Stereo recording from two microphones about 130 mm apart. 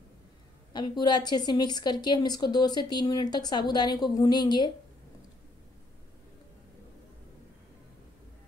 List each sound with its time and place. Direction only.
0.7 s a woman's voice: 35° left (ahead or behind)